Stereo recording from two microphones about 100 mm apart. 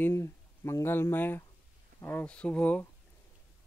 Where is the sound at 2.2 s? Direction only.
10° left (ahead or behind).